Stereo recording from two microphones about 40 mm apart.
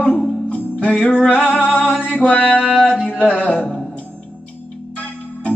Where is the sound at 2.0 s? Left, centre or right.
Left.